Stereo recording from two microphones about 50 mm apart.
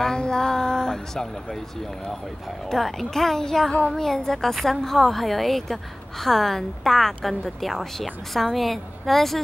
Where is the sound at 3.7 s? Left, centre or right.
Left.